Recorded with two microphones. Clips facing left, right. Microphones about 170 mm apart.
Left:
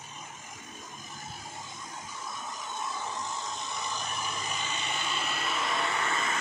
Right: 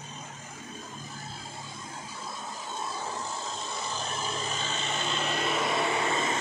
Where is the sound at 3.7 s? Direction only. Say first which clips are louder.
Right 2 dB; 15° left (ahead or behind).